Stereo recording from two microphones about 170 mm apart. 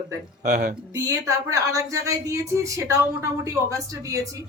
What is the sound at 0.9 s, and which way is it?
A woman's voice, 20° right (ahead or behind).